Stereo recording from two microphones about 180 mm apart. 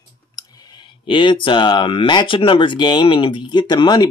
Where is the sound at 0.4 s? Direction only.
25° left (ahead or behind).